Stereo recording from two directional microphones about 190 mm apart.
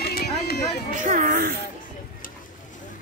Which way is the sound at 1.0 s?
45° right (ahead or behind).